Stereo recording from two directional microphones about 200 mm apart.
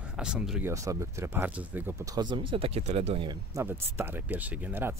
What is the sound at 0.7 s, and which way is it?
Speech, 15° right (ahead or behind).